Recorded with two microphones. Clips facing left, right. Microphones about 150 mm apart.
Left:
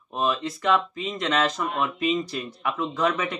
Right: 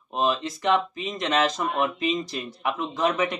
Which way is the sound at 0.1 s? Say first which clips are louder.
Right 1 dB; 20° right (ahead or behind).